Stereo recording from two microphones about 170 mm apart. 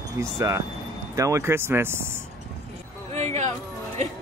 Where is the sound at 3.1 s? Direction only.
40° right (ahead or behind).